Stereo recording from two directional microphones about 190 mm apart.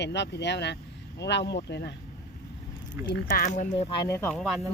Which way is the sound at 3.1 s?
60° left (ahead or behind).